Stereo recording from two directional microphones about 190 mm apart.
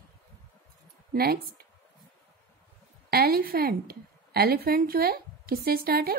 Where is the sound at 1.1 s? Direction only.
55° right (ahead or behind).